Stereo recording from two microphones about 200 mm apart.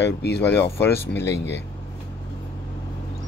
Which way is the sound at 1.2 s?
60° left (ahead or behind).